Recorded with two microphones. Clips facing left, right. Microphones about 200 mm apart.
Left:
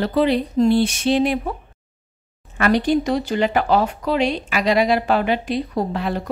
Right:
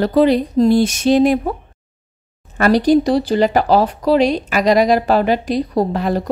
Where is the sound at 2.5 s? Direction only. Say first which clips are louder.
Right 5 dB; 40° right (ahead or behind).